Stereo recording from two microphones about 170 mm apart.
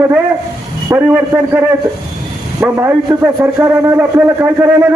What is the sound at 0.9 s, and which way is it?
A man's voice, 15° right (ahead or behind).